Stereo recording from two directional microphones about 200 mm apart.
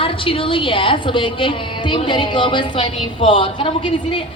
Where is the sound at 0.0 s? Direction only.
25° left (ahead or behind).